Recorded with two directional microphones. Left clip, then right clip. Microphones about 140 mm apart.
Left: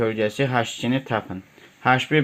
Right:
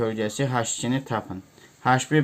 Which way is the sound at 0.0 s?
20° left (ahead or behind).